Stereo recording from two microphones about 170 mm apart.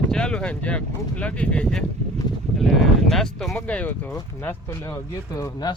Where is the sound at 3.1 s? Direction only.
Centre (ahead or behind).